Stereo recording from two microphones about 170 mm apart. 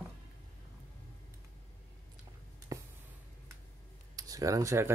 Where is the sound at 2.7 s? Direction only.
20° right (ahead or behind).